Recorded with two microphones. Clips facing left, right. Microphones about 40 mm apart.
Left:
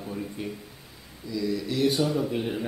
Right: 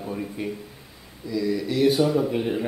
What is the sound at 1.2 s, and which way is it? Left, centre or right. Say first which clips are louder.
A man's voice: right 4 dB; centre.